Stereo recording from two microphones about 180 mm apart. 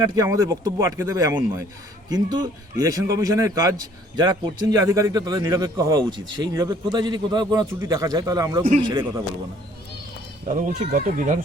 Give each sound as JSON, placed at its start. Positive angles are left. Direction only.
{"t": 0.0, "sound": "speech", "side_deg": -20}
{"t": 2.0, "sound": "speech", "side_deg": -25}
{"t": 10.5, "sound": "speech", "side_deg": -45}